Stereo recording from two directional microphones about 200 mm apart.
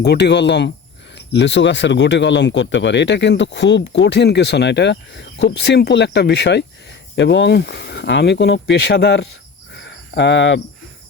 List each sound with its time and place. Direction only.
0.0 s speech: 55° left (ahead or behind)
9.7 s cricket: 60° left (ahead or behind)